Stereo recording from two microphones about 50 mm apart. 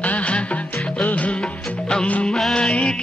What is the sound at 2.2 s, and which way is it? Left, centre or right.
Music, centre.